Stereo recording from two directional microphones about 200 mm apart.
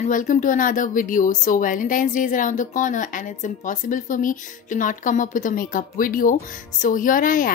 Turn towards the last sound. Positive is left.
turn(degrees=45)  # may be behind; listen again after turning